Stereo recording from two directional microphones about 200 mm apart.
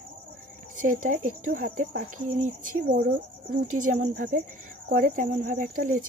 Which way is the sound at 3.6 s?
40° right (ahead or behind).